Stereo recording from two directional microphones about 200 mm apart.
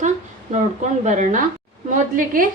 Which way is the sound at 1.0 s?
40° right (ahead or behind).